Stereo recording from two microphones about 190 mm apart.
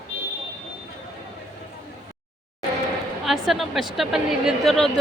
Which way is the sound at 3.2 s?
Centre (ahead or behind).